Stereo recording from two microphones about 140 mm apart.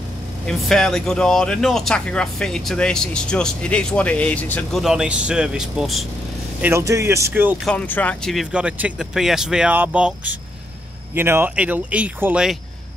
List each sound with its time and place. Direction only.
0.5 s speech: 5° left (ahead or behind)
4.8 s speech: 5° right (ahead or behind)
6.6 s speech: 20° right (ahead or behind)
7.6 s speech: 10° left (ahead or behind); by 12.4 s 10° right (ahead or behind)